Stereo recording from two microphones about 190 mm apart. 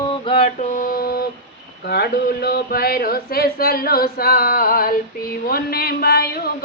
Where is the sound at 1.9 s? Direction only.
55° left (ahead or behind).